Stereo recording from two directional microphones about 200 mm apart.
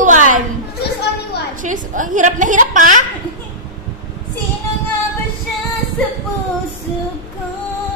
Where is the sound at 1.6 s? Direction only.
40° right (ahead or behind).